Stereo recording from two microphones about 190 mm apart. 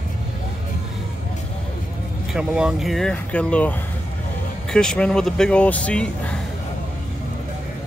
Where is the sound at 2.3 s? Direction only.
5° right (ahead or behind).